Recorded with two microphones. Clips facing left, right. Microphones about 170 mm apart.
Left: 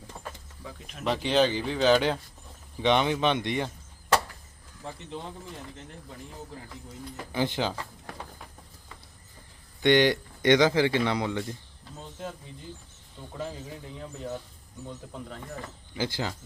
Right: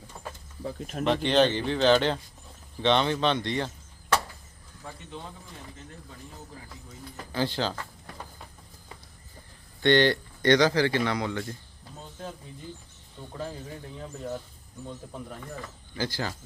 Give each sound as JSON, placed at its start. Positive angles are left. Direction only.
{"t": 0.6, "sound": "speech", "side_deg": -45}
{"t": 1.0, "sound": "speech", "side_deg": 5}
{"t": 7.3, "sound": "speech", "side_deg": 15}
{"t": 9.8, "sound": "speech", "side_deg": 15}
{"t": 13.3, "sound": "speech", "side_deg": 5}
{"t": 16.0, "sound": "speech", "side_deg": 20}